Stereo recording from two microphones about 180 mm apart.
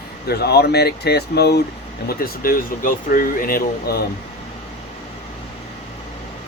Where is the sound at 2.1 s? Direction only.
55° left (ahead or behind).